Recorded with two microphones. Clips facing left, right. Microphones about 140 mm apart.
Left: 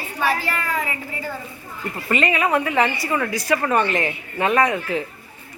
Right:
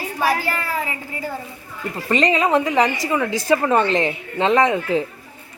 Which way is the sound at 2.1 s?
20° right (ahead or behind).